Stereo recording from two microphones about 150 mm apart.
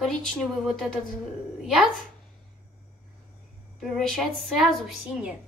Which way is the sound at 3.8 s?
Centre (ahead or behind).